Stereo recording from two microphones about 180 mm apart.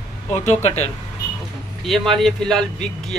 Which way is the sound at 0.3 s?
40° left (ahead or behind).